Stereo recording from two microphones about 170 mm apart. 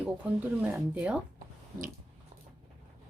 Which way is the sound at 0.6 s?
10° right (ahead or behind).